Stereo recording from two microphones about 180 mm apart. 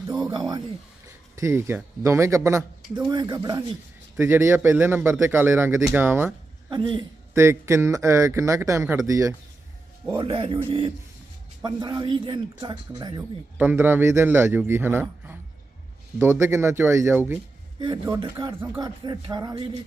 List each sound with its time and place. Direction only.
0.1 s speech: 20° right (ahead or behind)
6.7 s speech: 25° right (ahead or behind)
7.3 s speech: 15° right (ahead or behind)
10.2 s speech: 30° right (ahead or behind)
13.6 s speech: 10° right (ahead or behind)
17.7 s speech: 25° right (ahead or behind)
18.6 s speech: 10° right (ahead or behind)
19.0 s speech: 20° right (ahead or behind)